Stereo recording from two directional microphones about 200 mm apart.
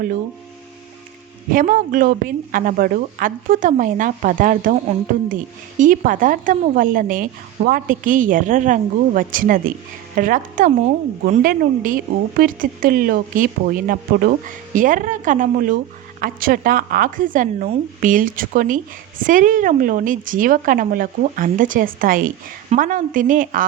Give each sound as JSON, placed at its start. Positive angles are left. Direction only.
{"t": 1.5, "sound": "speech", "side_deg": -40}